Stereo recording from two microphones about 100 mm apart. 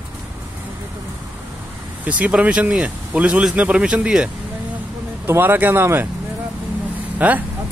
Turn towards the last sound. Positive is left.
turn(degrees=-15)  # may be behind; listen again after turning